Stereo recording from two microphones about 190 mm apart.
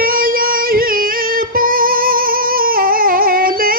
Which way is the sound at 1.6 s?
50° right (ahead or behind).